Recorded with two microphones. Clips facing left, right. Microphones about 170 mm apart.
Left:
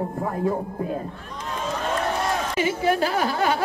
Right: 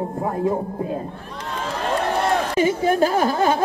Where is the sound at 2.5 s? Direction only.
40° right (ahead or behind).